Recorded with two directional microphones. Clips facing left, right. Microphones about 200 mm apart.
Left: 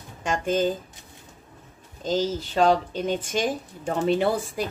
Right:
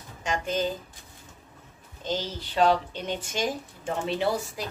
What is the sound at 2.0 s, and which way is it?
Speech, 45° left (ahead or behind).